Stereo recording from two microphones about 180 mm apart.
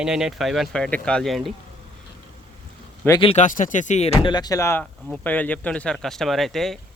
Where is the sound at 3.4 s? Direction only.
45° left (ahead or behind).